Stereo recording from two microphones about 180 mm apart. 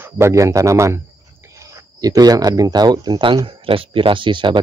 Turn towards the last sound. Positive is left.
turn(degrees=-25)  # may be behind; listen again after turning